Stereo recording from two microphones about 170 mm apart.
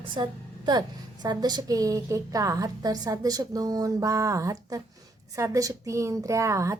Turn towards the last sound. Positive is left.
turn(degrees=-15)  # may be behind; listen again after turning